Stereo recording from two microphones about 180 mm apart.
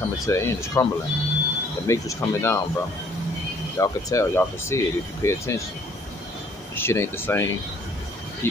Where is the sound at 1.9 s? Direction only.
15° left (ahead or behind).